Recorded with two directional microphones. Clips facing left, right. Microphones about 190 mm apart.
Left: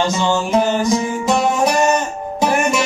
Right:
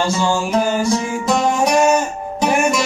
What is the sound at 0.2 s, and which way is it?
Speech, 10° right (ahead or behind).